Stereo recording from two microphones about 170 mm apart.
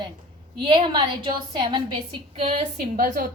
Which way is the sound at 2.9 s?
55° right (ahead or behind).